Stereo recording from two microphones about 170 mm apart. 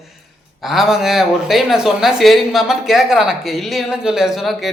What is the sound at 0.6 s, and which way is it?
Speech, centre (ahead or behind).